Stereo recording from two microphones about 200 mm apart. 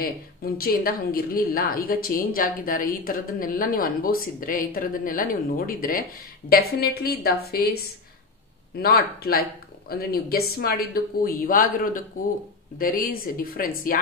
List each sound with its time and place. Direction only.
0.0 s a woman's voice: 50° left (ahead or behind)